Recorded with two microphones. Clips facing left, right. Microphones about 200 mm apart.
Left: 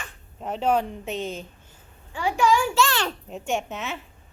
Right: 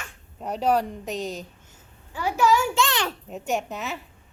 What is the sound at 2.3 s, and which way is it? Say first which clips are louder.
Speech: even; 5° right (ahead or behind).